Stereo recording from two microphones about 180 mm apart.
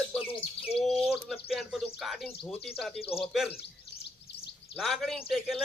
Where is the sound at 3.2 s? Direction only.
Centre (ahead or behind).